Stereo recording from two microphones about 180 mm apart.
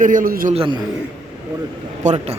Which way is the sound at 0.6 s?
25° right (ahead or behind).